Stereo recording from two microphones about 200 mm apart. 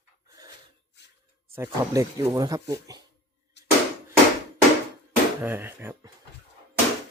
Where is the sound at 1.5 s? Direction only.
10° right (ahead or behind).